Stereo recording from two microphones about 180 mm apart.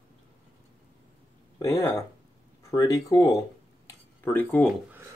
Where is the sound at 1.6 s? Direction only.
15° left (ahead or behind).